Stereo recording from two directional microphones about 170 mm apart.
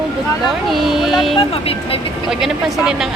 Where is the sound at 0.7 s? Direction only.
Centre (ahead or behind).